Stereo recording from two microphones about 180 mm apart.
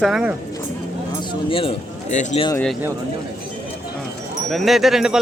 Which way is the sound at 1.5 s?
30° left (ahead or behind).